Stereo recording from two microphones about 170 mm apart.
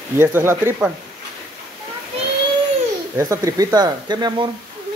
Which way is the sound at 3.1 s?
20° right (ahead or behind).